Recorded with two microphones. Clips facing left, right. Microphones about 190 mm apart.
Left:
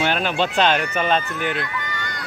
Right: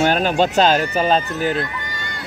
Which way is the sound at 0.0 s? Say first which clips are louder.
Right 5 dB; 40° right (ahead or behind).